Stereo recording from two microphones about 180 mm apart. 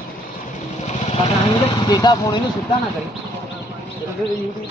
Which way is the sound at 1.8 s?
20° left (ahead or behind).